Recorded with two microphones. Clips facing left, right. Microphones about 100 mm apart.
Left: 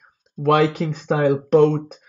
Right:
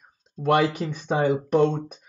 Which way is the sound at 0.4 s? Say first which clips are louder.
Left 4 dB; 90° left.